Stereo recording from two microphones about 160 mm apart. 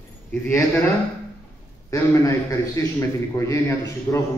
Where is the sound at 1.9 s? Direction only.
20° left (ahead or behind).